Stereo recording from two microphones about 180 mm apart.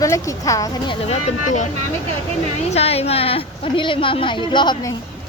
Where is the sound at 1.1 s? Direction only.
45° left (ahead or behind).